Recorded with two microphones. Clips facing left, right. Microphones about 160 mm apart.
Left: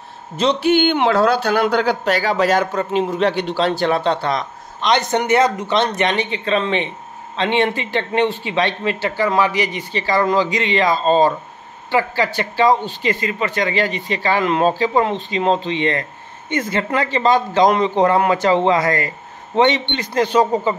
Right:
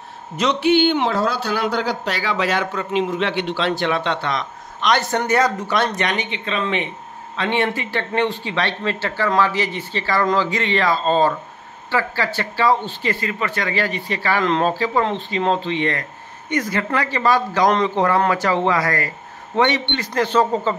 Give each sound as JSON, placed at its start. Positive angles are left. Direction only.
{"t": 0.4, "sound": "speech", "side_deg": 30}
{"t": 0.7, "sound": "speech", "side_deg": 55}
{"t": 4.9, "sound": "speech", "side_deg": 20}
{"t": 6.3, "sound": "speech", "side_deg": 40}
{"t": 6.6, "sound": "a man's voice", "side_deg": 30}